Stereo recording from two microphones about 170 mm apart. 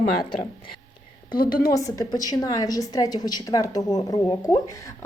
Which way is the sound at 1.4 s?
60° left (ahead or behind).